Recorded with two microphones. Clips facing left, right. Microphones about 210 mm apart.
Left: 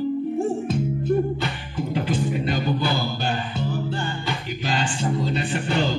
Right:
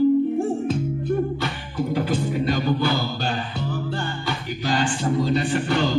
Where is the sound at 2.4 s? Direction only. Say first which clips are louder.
Right 2 dB; 15° left (ahead or behind).